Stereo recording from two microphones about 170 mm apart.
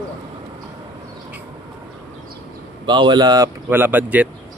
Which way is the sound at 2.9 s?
25° right (ahead or behind).